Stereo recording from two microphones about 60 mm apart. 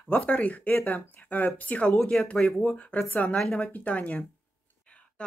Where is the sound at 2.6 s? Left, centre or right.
Left.